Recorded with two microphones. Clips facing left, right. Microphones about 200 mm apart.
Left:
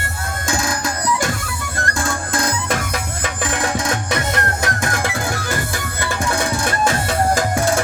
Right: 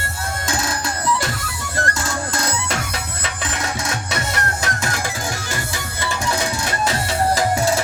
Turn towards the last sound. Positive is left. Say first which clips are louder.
# left 1 dB
turn(degrees=50)  # may be behind; listen again after turning